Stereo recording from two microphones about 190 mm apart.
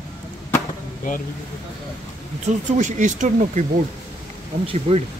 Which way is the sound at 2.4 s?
40° right (ahead or behind).